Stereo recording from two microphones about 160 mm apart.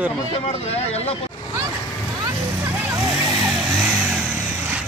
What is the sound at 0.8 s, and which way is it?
Speech, 40° left (ahead or behind).